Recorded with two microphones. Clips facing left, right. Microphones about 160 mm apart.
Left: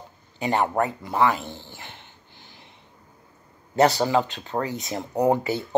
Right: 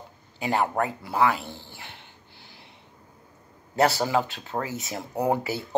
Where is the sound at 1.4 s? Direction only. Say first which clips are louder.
Left 2 dB; 20° left (ahead or behind).